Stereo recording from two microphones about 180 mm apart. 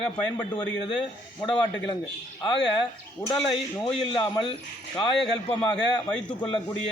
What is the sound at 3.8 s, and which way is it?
Speech, 30° left (ahead or behind).